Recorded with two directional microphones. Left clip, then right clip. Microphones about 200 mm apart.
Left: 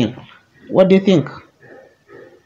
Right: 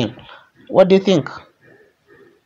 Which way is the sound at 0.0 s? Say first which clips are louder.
Left 2 dB; 40° right (ahead or behind).